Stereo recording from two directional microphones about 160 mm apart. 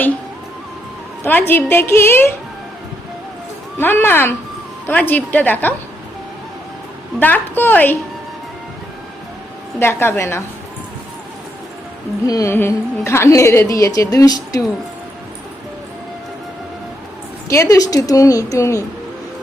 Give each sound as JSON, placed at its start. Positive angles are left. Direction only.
{"t": 1.2, "sound": "a woman's voice", "side_deg": 10}
{"t": 3.8, "sound": "a woman's voice", "side_deg": 15}
{"t": 7.2, "sound": "a woman's voice", "side_deg": 10}
{"t": 9.7, "sound": "a woman's voice", "side_deg": 15}
{"t": 12.2, "sound": "a woman's voice", "side_deg": 20}
{"t": 17.5, "sound": "a woman's voice", "side_deg": 20}